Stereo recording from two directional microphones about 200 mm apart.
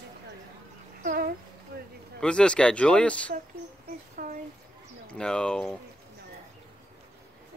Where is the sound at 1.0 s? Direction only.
45° right (ahead or behind).